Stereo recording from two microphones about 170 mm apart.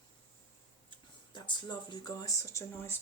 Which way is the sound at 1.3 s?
25° left (ahead or behind).